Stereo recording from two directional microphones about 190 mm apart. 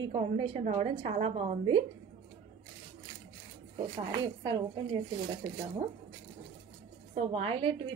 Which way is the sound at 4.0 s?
20° right (ahead or behind).